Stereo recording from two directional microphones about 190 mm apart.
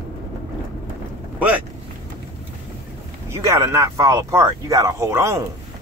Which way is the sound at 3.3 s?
15° right (ahead or behind).